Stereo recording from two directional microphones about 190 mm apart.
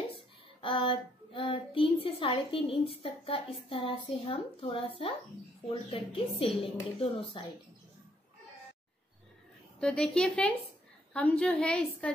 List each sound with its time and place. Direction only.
0.1 s child singing: 30° left (ahead or behind)
3.6 s a woman's voice: 30° left (ahead or behind)
9.8 s a woman's voice: 5° left (ahead or behind)